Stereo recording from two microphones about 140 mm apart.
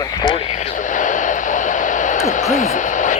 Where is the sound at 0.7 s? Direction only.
65° left (ahead or behind).